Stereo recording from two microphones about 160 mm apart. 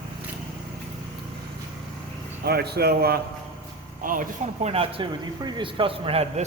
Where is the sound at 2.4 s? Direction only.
85° right.